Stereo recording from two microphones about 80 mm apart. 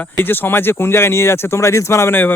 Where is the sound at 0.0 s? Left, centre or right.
Left.